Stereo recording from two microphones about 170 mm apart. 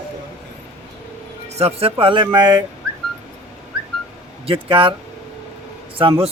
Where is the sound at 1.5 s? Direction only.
35° right (ahead or behind).